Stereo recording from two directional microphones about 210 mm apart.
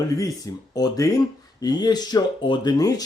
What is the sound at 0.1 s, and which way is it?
Speech, 15° left (ahead or behind).